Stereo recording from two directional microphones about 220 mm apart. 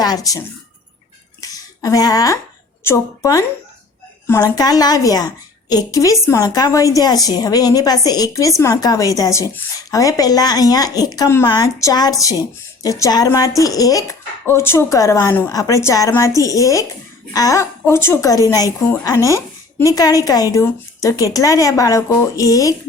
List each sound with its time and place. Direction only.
0.0 s a woman's voice: 15° left (ahead or behind)
1.4 s a sound: 15° left (ahead or behind)
2.8 s a woman's voice: 15° left (ahead or behind)